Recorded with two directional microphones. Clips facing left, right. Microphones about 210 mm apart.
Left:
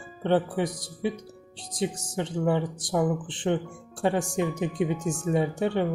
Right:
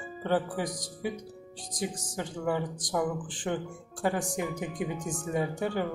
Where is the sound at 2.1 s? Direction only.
25° left (ahead or behind).